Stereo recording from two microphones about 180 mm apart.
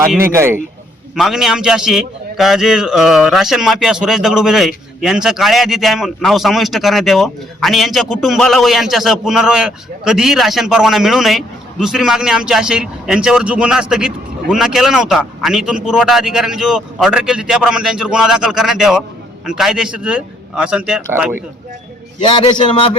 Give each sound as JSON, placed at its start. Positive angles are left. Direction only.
{"t": 0.3, "sound": "speech", "side_deg": -15}
{"t": 1.1, "sound": "a man's voice", "side_deg": -5}
{"t": 22.2, "sound": "a man's voice", "side_deg": 25}